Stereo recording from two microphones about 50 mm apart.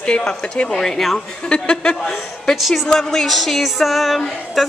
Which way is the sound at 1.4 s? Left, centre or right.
Centre.